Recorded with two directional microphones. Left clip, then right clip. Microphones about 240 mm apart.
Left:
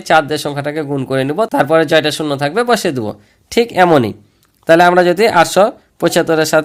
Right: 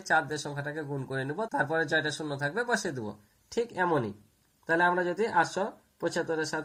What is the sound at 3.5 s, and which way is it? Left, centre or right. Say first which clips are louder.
A man's voice: left 18 dB; left.